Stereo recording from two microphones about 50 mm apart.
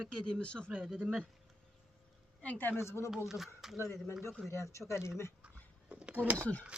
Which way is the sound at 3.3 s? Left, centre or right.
Centre.